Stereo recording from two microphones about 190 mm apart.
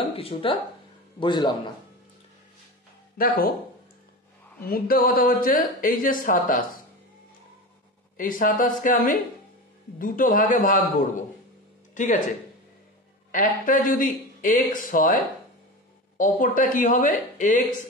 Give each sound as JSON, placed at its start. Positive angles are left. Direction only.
{"t": 0.1, "sound": "speech", "side_deg": 30}
{"t": 3.2, "sound": "speech", "side_deg": 50}
{"t": 4.6, "sound": "speech", "side_deg": 50}
{"t": 8.2, "sound": "speech", "side_deg": 45}
{"t": 13.3, "sound": "speech", "side_deg": 45}